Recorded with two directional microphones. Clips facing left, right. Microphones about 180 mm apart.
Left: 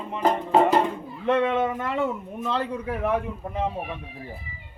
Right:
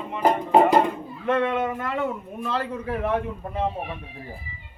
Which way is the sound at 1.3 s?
15° left (ahead or behind).